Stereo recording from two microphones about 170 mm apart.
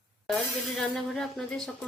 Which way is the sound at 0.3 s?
5° left (ahead or behind).